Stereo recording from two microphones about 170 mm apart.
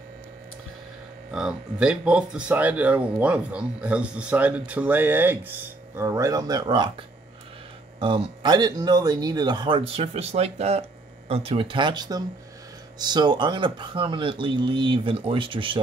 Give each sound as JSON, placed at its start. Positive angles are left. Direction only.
{"t": 1.3, "sound": "speech", "side_deg": -5}
{"t": 8.0, "sound": "speech", "side_deg": -30}